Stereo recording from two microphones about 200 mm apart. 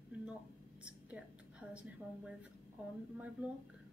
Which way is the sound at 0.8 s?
5° right (ahead or behind).